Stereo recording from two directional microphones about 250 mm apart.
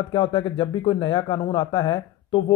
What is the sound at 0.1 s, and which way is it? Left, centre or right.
Speech, left.